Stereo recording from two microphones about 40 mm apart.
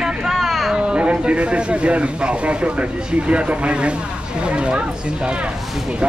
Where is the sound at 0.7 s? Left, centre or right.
Right.